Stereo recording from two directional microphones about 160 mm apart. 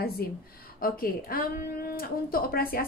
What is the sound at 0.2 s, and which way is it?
Speech, 70° left (ahead or behind).